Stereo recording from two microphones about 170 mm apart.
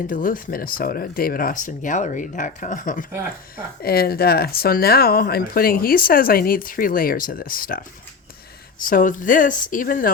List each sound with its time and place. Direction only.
0.1 s speech: 55° left (ahead or behind)
3.8 s speech: 65° left (ahead or behind)